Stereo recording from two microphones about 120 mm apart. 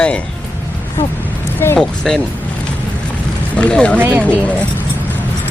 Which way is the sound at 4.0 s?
20° right (ahead or behind).